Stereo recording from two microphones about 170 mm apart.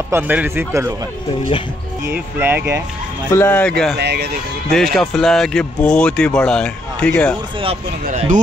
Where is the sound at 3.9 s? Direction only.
75° right (ahead or behind).